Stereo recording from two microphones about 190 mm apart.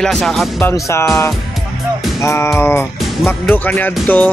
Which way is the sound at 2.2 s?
15° left (ahead or behind).